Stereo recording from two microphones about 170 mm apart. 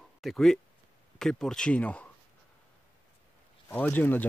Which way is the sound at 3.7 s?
10° left (ahead or behind).